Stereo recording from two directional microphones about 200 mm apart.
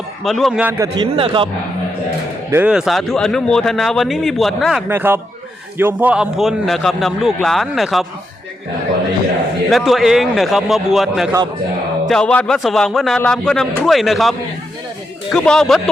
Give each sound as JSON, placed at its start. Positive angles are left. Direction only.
{"t": 0.3, "sound": "a man's voice", "side_deg": 0}
{"t": 1.1, "sound": "a man's voice", "side_deg": -25}
{"t": 2.5, "sound": "a man's voice", "side_deg": -5}
{"t": 4.9, "sound": "a man's voice", "side_deg": -10}
{"t": 9.6, "sound": "a man's voice", "side_deg": 0}